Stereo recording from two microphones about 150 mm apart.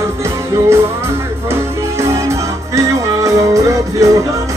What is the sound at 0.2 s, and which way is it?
Music, 15° right (ahead or behind).